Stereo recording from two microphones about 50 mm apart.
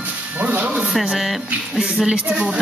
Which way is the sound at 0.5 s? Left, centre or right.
Right.